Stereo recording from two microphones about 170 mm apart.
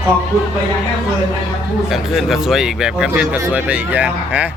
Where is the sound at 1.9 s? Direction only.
Centre (ahead or behind).